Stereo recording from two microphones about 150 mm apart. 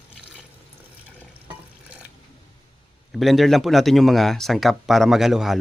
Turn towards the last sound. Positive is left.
turn(degrees=0)  # may be behind; listen again after turning